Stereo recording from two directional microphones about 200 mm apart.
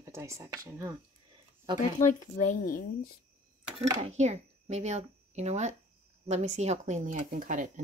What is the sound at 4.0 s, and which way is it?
Speech, 35° right (ahead or behind).